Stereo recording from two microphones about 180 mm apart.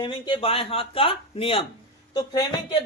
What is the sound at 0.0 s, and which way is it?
Speech, 25° left (ahead or behind).